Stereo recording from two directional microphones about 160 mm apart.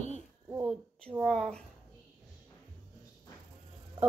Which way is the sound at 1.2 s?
5° left (ahead or behind).